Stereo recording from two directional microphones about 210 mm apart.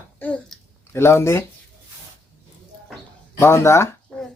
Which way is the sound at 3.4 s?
15° left (ahead or behind).